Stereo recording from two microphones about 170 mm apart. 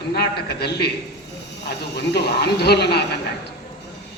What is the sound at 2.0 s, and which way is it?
A man's voice, 80° left.